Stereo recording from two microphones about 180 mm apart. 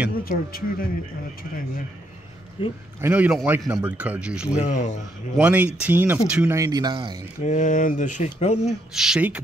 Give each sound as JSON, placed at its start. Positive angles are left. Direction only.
{"t": 0.2, "sound": "speech", "side_deg": 55}
{"t": 2.6, "sound": "speech", "side_deg": 30}
{"t": 3.0, "sound": "a man's voice", "side_deg": -10}
{"t": 4.6, "sound": "speech", "side_deg": 40}
{"t": 5.4, "sound": "a man's voice", "side_deg": -10}
{"t": 6.5, "sound": "speech", "side_deg": -20}
{"t": 7.4, "sound": "speech", "side_deg": 45}
{"t": 8.9, "sound": "speech", "side_deg": -5}